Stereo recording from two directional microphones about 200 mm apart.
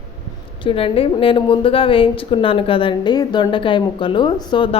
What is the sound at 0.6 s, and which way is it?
A woman's voice, 25° left (ahead or behind).